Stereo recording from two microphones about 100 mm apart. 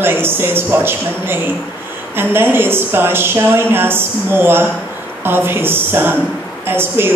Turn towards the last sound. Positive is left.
turn(degrees=-20)  # may be behind; listen again after turning